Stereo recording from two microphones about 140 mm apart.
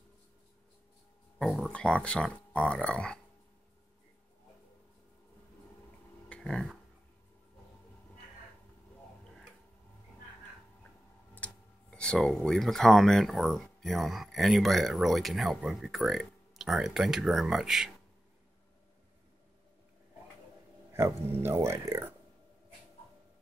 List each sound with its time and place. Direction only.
1.4 s speech: centre (ahead or behind)
6.2 s a sound: 5° left (ahead or behind)
11.3 s speech: 10° left (ahead or behind)
20.9 s speech: 15° right (ahead or behind)